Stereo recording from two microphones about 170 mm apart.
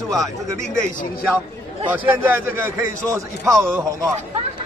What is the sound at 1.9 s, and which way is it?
A man's voice, 10° right (ahead or behind).